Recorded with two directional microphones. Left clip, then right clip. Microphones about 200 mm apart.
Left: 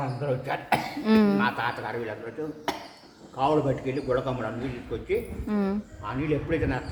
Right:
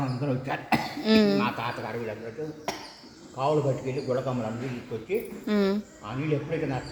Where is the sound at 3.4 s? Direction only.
15° left (ahead or behind).